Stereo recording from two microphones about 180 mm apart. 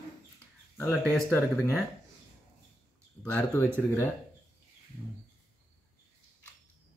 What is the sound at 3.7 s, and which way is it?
Speech, 10° left (ahead or behind).